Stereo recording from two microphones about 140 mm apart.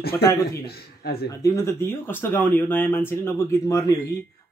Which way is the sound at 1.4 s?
20° left (ahead or behind).